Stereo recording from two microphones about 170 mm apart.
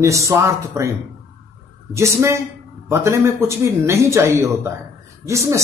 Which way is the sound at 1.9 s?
15° right (ahead or behind).